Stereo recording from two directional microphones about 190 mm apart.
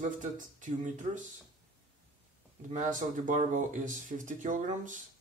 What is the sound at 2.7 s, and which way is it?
Speech, 45° right (ahead or behind).